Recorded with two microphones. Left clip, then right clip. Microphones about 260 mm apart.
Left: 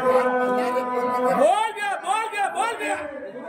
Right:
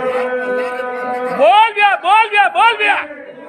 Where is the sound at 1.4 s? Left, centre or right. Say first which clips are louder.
Right 15 dB; right.